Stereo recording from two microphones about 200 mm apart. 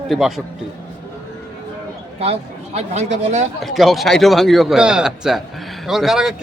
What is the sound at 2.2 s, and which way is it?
Speech, 30° right (ahead or behind).